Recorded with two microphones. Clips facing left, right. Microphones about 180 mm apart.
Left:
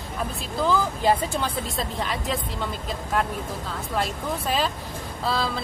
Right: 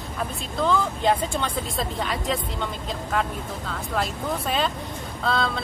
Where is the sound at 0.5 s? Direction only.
5° left (ahead or behind).